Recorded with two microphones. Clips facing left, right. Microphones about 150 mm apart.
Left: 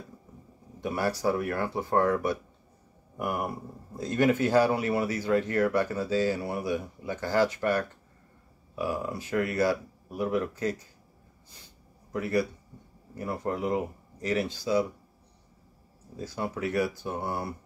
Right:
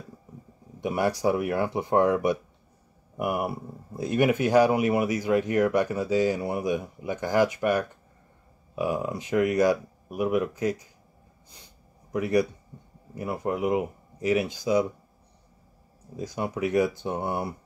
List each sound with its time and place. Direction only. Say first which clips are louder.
0.7 s speech: right 3 dB; 15° right (ahead or behind)
12.1 s a man's voice: right 4 dB; 15° right (ahead or behind)
16.2 s speech: right 3 dB; 15° right (ahead or behind)